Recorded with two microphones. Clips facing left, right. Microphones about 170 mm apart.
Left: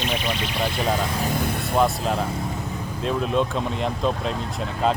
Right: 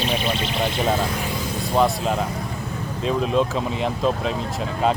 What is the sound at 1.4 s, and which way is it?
Vehicle, 60° left (ahead or behind).